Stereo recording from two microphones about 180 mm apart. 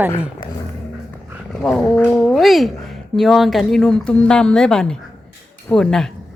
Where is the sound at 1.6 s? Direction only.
5° left (ahead or behind).